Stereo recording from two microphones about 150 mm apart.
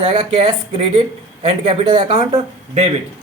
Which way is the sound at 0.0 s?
40° right (ahead or behind).